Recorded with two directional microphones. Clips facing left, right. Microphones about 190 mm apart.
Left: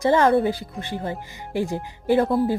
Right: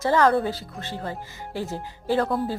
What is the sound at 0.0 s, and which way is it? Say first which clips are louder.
A woman's voice: left 3 dB; 20° left (ahead or behind).